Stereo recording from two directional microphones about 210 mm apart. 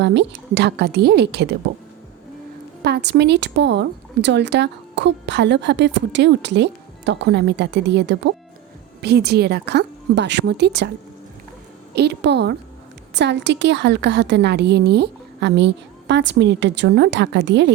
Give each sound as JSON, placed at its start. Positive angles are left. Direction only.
{"t": 0.0, "sound": "a woman's voice", "side_deg": -55}
{"t": 2.8, "sound": "a woman's voice", "side_deg": -50}
{"t": 11.9, "sound": "a woman's voice", "side_deg": -55}